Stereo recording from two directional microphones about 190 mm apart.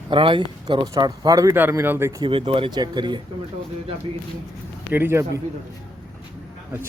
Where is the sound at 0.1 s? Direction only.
25° right (ahead or behind).